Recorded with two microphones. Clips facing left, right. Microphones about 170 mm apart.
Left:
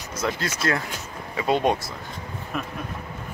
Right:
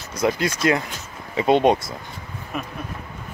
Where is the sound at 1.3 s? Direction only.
25° right (ahead or behind).